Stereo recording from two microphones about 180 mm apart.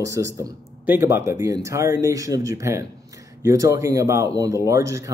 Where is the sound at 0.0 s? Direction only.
15° right (ahead or behind).